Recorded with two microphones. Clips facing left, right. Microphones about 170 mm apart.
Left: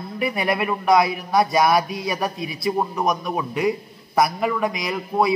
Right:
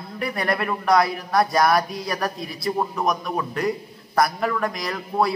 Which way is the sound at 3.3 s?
10° left (ahead or behind).